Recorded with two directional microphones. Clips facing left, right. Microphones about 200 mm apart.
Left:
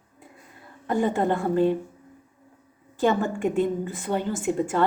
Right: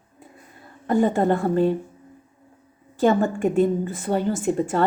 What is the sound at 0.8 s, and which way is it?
Speech, 40° right (ahead or behind).